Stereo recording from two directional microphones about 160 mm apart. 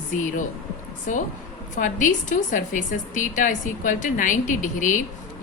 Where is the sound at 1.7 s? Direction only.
55° left (ahead or behind).